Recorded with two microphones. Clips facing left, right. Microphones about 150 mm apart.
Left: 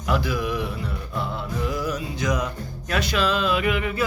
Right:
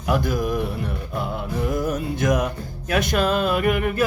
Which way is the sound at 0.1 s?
50° right (ahead or behind).